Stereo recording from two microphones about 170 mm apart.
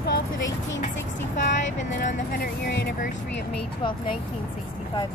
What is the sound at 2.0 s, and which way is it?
Speech, 55° left (ahead or behind).